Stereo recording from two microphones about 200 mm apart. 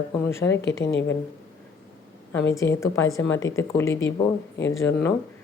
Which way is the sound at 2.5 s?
15° left (ahead or behind).